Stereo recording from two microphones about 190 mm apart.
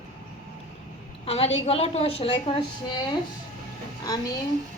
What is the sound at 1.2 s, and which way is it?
A woman's voice, 30° left (ahead or behind).